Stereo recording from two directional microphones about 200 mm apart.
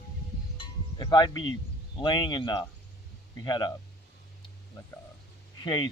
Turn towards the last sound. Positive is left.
turn(degrees=20)  # may be behind; listen again after turning